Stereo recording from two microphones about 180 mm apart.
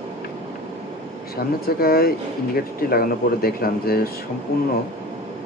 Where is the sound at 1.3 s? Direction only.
60° left (ahead or behind).